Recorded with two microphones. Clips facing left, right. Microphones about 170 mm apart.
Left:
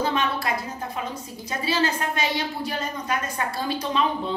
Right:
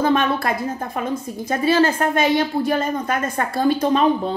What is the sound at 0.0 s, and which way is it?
A woman's voice, 50° right (ahead or behind).